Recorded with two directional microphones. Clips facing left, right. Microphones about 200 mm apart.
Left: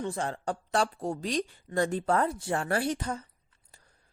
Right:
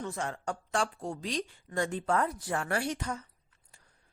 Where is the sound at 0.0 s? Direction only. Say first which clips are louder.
Left 3 dB; 30° left (ahead or behind).